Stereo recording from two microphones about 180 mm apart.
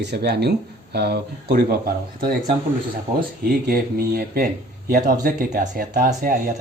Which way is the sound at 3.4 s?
55° right (ahead or behind).